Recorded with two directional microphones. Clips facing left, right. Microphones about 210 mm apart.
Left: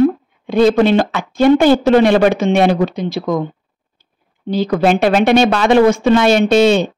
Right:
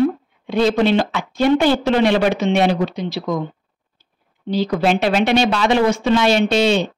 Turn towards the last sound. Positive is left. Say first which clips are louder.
# left 5 dB
turn(degrees=50)  # may be behind; listen again after turning